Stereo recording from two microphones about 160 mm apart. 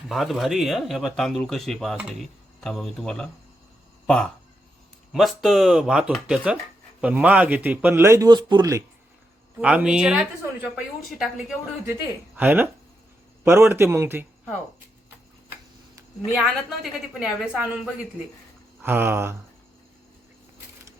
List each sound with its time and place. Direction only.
0.1 s a woman's voice: centre (ahead or behind)
6.3 s a man's voice: 10° right (ahead or behind); by 8.8 s 25° right (ahead or behind)
9.6 s a woman's voice: 5° right (ahead or behind)
16.3 s a woman's voice: centre (ahead or behind)